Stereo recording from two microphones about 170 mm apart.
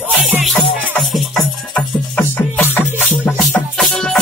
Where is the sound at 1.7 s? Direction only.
5° left (ahead or behind).